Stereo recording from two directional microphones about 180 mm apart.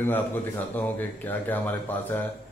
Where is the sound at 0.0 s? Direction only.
10° left (ahead or behind).